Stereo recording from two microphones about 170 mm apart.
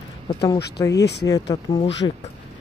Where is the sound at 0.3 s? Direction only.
25° left (ahead or behind).